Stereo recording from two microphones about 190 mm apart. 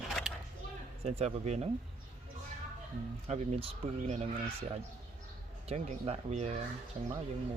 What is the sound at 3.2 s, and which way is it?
Speech, 35° right (ahead or behind).